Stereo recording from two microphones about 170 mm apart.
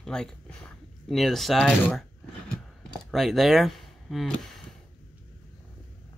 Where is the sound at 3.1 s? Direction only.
Centre (ahead or behind).